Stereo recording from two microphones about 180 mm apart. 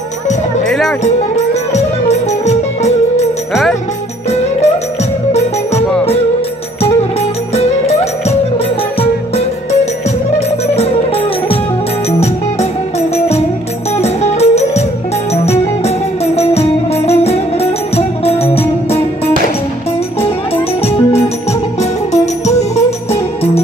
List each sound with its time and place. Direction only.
0.7 s music: centre (ahead or behind)
1.0 s music: 40° left (ahead or behind)
4.3 s music: 35° left (ahead or behind)
7.0 s music: 35° left (ahead or behind)
10.8 s music: 35° left (ahead or behind)
13.9 s music: 35° left (ahead or behind)
20.2 s music: 35° left (ahead or behind)